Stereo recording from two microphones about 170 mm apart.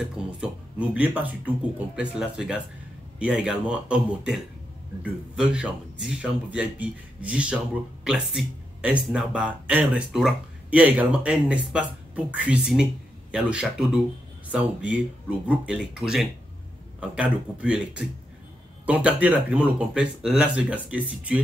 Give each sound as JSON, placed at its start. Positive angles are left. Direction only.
{"t": 0.0, "sound": "a man's voice", "side_deg": -5}